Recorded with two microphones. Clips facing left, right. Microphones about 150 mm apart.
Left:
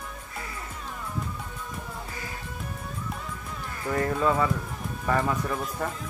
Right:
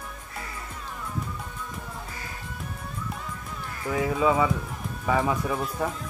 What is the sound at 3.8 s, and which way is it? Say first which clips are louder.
Speech: right 1 dB; 5° right (ahead or behind).